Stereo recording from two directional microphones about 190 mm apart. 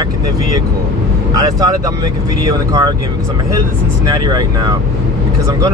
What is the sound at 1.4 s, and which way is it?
Speech, 20° right (ahead or behind).